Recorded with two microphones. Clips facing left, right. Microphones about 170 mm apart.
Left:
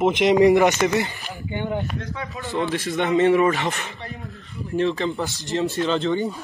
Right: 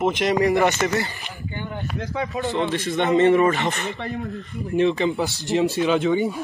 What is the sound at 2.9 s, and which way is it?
A man's voice, 5° left (ahead or behind).